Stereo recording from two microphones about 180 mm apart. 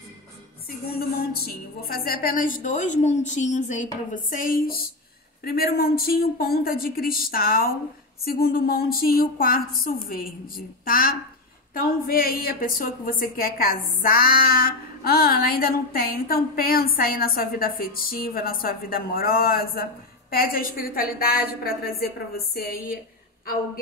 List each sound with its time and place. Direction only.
0.7 s a woman's voice: 60° left (ahead or behind)